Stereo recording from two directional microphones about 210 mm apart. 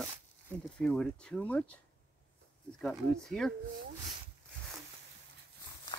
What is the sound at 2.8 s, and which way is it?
Speech, centre (ahead or behind).